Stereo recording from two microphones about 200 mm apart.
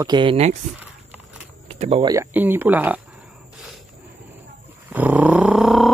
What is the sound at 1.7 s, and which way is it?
Speech, 30° right (ahead or behind).